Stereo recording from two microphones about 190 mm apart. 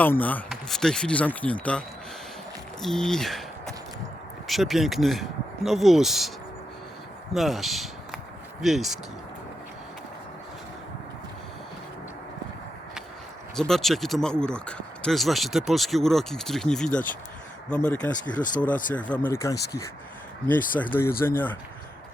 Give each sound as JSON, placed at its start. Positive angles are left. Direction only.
{"t": 0.0, "sound": "speech", "side_deg": 10}
{"t": 2.8, "sound": "speech", "side_deg": 5}
{"t": 7.3, "sound": "speech", "side_deg": 0}
{"t": 13.6, "sound": "speech", "side_deg": 0}
{"t": 18.3, "sound": "speech", "side_deg": 45}
{"t": 18.6, "sound": "speech", "side_deg": 5}
{"t": 20.7, "sound": "speech", "side_deg": 10}